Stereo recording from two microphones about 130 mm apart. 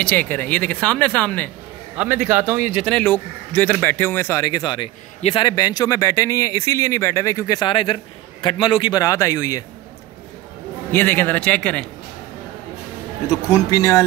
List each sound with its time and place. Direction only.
0.0 s speech: 15° left (ahead or behind)
2.0 s a man's voice: 10° right (ahead or behind)
2.9 s speech: 15° left (ahead or behind)
4.4 s speech: 35° left (ahead or behind)
10.9 s speech: 15° left (ahead or behind)
13.3 s speech: 25° left (ahead or behind)